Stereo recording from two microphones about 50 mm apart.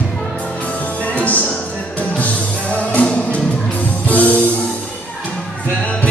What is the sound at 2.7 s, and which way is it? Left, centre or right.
Music, left.